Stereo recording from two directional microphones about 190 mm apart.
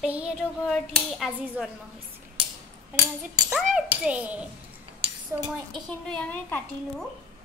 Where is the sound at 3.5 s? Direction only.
Centre (ahead or behind).